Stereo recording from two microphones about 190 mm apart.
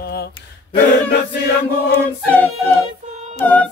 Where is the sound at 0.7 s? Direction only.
60° left (ahead or behind).